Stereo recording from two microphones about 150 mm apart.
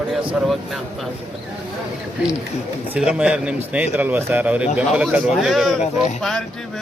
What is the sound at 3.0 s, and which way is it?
A man's voice, 5° right (ahead or behind).